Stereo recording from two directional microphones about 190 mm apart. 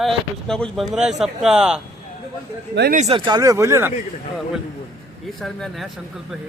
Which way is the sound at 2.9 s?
35° right (ahead or behind).